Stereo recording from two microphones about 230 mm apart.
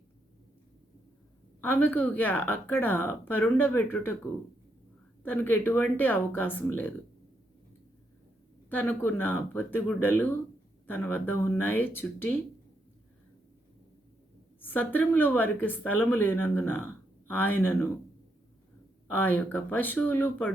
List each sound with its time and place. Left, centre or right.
1.6 s speech: centre
5.2 s speech: centre
8.7 s speech: centre
14.6 s speech: centre
19.1 s speech: centre